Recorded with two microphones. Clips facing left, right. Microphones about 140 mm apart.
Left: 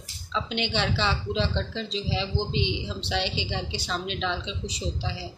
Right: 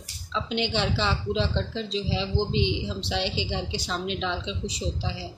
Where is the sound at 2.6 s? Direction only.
60° left (ahead or behind).